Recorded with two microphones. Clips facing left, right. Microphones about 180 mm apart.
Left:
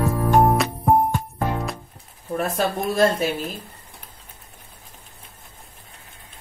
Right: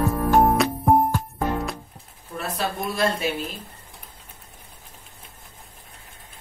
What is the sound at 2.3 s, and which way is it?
Speech, 45° left (ahead or behind).